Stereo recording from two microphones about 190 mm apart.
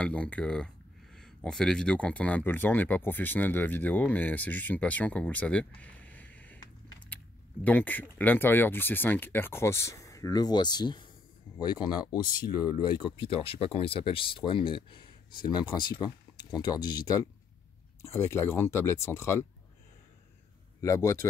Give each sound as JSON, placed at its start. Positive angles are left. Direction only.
{"t": 0.0, "sound": "speech", "side_deg": 5}
{"t": 5.8, "sound": "a sound", "side_deg": 10}
{"t": 7.6, "sound": "speech", "side_deg": 10}
{"t": 20.8, "sound": "speech", "side_deg": 15}